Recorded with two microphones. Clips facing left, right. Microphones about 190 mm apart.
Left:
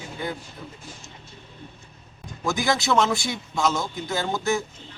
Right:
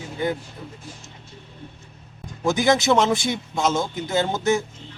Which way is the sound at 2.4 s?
20° right (ahead or behind).